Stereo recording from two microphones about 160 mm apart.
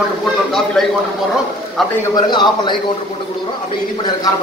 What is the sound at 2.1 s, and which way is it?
Speech, 30° left (ahead or behind).